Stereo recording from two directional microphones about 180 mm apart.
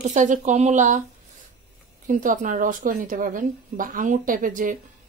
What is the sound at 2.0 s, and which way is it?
Speech, 45° right (ahead or behind).